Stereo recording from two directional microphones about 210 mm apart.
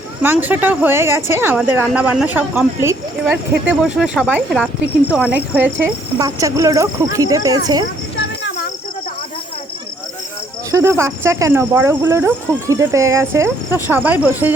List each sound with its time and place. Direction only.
0.2 s a woman's voice: 10° right (ahead or behind)
10.7 s a woman's voice: 15° right (ahead or behind)